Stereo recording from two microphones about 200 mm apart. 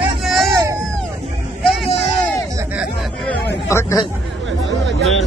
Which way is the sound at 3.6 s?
15° left (ahead or behind).